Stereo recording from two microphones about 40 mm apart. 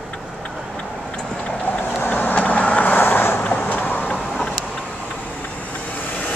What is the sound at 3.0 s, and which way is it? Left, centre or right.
Boat, left.